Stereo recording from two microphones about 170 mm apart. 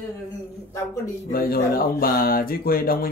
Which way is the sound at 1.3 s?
60° left (ahead or behind).